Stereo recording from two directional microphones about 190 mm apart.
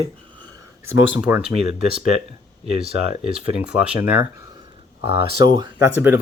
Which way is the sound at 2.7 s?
30° right (ahead or behind).